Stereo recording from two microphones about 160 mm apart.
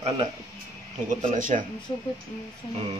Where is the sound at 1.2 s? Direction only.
55° right (ahead or behind).